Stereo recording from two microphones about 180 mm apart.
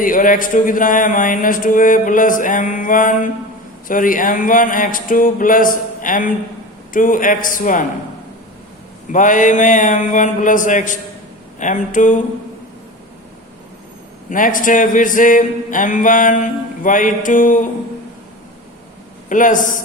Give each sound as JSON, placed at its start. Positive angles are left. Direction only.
{"t": 0.0, "sound": "speech", "side_deg": 50}
{"t": 9.1, "sound": "speech", "side_deg": 45}
{"t": 14.3, "sound": "speech", "side_deg": 45}
{"t": 19.3, "sound": "speech", "side_deg": 45}